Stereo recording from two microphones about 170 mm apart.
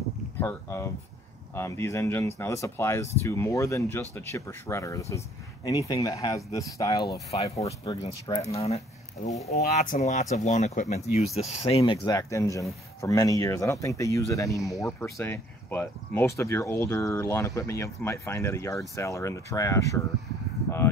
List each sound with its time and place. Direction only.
0.4 s speech: 15° left (ahead or behind)
7.2 s speech: 35° left (ahead or behind)
8.3 s speech: 40° left (ahead or behind); by 14.6 s 20° left (ahead or behind)
14.9 s speech: 5° left (ahead or behind)